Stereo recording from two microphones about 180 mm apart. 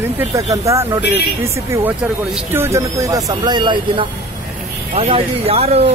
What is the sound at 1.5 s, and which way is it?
Speech, 15° right (ahead or behind).